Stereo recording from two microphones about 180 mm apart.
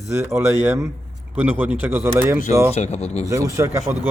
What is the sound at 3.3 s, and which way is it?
Speech, 15° right (ahead or behind).